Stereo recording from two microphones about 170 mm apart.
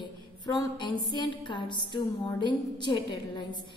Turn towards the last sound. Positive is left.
turn(degrees=25)  # may be behind; listen again after turning